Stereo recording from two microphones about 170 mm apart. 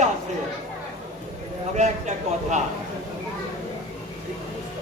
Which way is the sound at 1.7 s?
45° right (ahead or behind).